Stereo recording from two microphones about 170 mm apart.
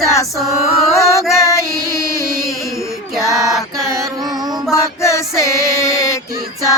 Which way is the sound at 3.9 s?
20° right (ahead or behind).